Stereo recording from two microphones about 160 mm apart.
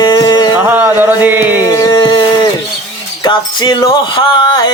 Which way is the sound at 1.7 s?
25° left (ahead or behind).